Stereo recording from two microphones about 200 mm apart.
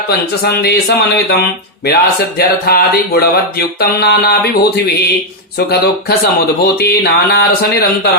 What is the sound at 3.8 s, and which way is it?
Speech, 50° left (ahead or behind).